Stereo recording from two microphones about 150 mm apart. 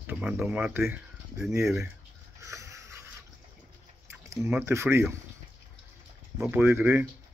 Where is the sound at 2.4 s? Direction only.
20° right (ahead or behind).